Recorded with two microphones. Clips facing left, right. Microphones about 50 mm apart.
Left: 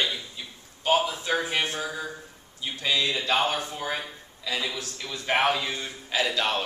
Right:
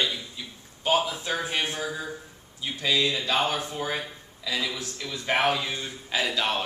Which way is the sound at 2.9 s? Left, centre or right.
Left.